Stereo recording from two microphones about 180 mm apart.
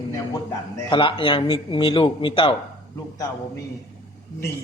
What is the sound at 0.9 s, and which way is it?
Speech, 25° left (ahead or behind).